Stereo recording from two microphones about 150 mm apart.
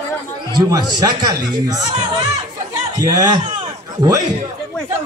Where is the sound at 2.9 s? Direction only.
25° right (ahead or behind).